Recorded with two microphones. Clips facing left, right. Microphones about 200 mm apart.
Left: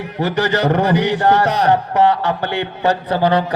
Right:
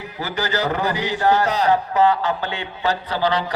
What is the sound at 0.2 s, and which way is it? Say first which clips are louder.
Music: left 6 dB; 70° left (ahead or behind).